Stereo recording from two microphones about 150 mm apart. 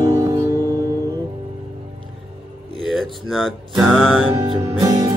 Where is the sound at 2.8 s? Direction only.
Centre (ahead or behind).